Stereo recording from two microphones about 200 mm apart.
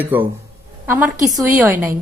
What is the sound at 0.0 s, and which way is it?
A man's voice, 10° right (ahead or behind).